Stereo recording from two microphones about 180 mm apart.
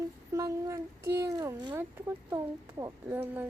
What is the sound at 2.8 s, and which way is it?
Child singing, 15° right (ahead or behind).